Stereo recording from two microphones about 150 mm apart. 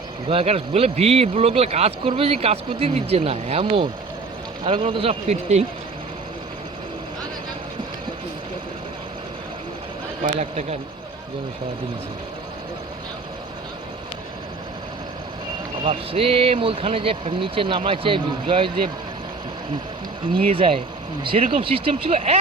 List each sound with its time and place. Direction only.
0.3 s speech: 40° right (ahead or behind)
10.2 s speech: 50° right (ahead or behind)
15.8 s speech: 40° right (ahead or behind)
20.3 s speech: 40° right (ahead or behind)